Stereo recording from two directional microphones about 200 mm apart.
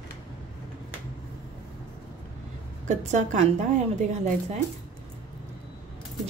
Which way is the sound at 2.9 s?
35° right (ahead or behind).